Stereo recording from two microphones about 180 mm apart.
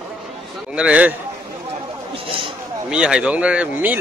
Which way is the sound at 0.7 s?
5° right (ahead or behind).